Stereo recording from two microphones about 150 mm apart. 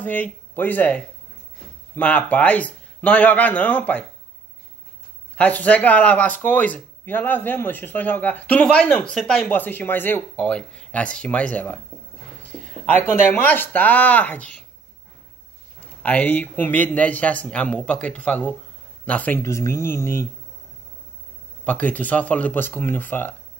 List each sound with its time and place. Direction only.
0.0 s speech: 10° left (ahead or behind)
5.3 s speech: 10° left (ahead or behind)
12.4 s a sound: 10° left (ahead or behind)
13.1 s speech: 15° left (ahead or behind)
15.8 s speech: 10° left (ahead or behind)
21.6 s speech: 10° left (ahead or behind)